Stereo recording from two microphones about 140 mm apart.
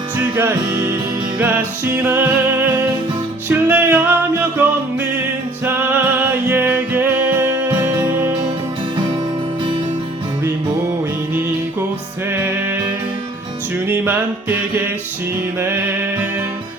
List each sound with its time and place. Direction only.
0.3 s music: 20° right (ahead or behind)
1.4 s music: 15° right (ahead or behind)
13.8 s music: 15° right (ahead or behind)